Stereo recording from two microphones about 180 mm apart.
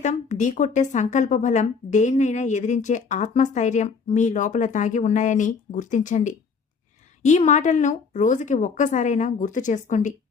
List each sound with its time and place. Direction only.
0.0 s a woman's voice: 40° left (ahead or behind)